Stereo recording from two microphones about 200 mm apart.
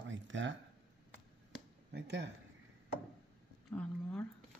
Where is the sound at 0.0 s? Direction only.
70° right (ahead or behind).